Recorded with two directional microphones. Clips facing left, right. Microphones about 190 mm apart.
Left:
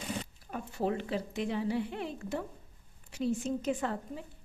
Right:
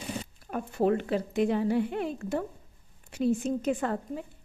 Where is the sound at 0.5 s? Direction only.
55° right (ahead or behind).